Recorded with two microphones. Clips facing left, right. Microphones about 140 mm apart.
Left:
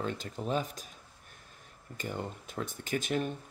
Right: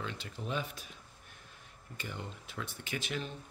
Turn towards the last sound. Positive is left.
turn(degrees=50)  # may be behind; listen again after turning